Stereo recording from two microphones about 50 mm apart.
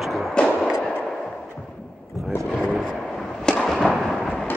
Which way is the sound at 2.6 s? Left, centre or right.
Centre.